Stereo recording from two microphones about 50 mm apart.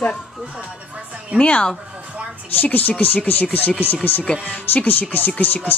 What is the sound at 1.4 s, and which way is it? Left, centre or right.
Speech, left.